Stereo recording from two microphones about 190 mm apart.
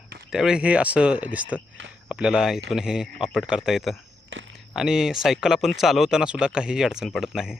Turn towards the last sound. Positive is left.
turn(degrees=0)  # may be behind; listen again after turning